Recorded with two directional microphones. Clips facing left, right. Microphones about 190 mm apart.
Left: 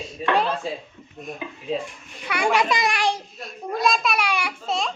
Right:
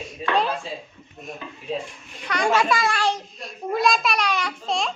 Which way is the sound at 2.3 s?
10° left (ahead or behind).